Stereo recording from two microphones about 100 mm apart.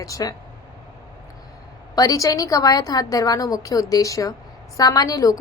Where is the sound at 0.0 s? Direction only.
35° left (ahead or behind).